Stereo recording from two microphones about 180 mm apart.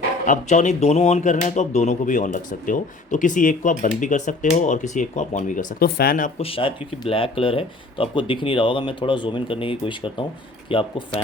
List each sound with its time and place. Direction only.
0.3 s speech: 40° left (ahead or behind)
6.4 s speech: 30° left (ahead or behind)